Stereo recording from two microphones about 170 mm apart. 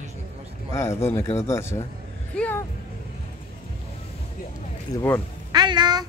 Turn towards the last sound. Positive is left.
turn(degrees=-25)  # may be behind; listen again after turning